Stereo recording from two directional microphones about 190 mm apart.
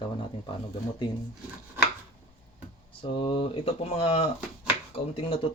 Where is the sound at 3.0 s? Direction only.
30° left (ahead or behind).